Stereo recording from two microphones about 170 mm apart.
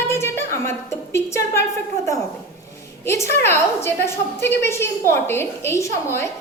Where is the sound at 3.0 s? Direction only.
15° left (ahead or behind).